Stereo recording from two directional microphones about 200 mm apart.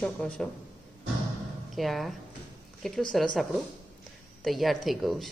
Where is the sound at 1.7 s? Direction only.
Centre (ahead or behind).